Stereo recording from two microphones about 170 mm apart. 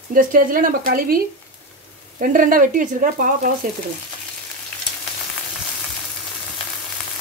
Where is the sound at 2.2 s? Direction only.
55° right (ahead or behind).